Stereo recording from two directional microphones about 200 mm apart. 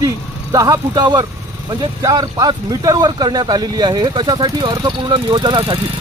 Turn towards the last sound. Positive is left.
turn(degrees=-25)  # may be behind; listen again after turning